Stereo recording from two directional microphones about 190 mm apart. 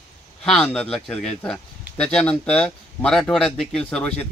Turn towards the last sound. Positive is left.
turn(degrees=5)  # may be behind; listen again after turning